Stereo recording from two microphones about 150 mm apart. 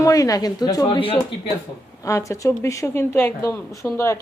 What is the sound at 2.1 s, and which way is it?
A woman's voice, 20° left (ahead or behind).